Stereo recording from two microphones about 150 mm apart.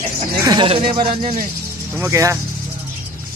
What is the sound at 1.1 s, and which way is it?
Speech, 60° right (ahead or behind).